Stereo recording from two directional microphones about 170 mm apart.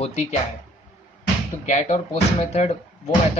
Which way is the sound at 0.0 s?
45° left (ahead or behind).